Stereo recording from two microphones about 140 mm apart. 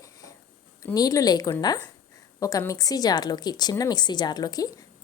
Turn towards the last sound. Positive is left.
turn(degrees=30)  # may be behind; listen again after turning